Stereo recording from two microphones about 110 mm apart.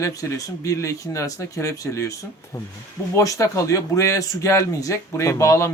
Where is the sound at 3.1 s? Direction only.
30° left (ahead or behind).